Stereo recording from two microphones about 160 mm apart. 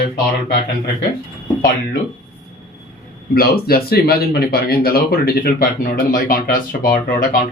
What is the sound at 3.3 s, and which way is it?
Speech, 70° left (ahead or behind).